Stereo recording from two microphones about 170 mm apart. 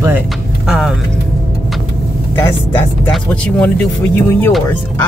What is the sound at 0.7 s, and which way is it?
Speech, centre (ahead or behind).